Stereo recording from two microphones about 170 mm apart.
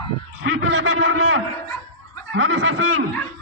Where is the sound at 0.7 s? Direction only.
90° right.